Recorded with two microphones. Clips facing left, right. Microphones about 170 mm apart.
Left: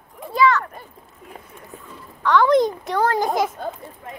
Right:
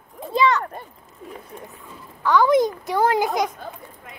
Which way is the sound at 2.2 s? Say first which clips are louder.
Left 1 dB; centre (ahead or behind).